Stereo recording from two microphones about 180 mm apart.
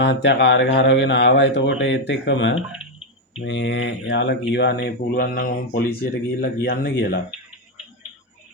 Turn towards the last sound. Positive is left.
turn(degrees=60)  # may be behind; listen again after turning